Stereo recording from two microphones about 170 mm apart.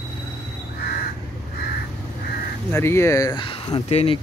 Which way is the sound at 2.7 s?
15° left (ahead or behind).